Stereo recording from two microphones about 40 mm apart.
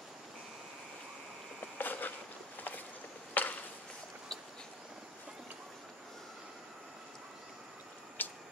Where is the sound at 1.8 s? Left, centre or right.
Left.